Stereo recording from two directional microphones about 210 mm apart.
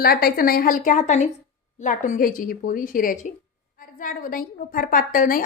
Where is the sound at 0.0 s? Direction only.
45° left (ahead or behind).